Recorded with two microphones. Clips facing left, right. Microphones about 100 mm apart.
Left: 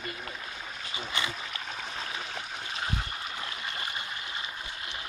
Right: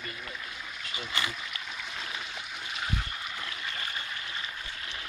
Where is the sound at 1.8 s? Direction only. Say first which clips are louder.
Left 1 dB; 40° left (ahead or behind).